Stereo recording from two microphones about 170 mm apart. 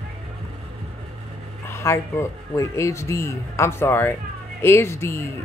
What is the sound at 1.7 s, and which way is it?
Speech, 15° left (ahead or behind).